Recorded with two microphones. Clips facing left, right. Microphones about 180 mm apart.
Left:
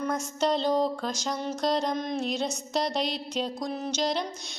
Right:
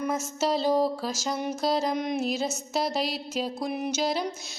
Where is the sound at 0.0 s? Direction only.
5° right (ahead or behind).